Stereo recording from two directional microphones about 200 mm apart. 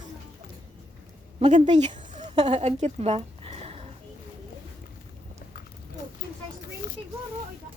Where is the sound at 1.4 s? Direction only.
30° right (ahead or behind).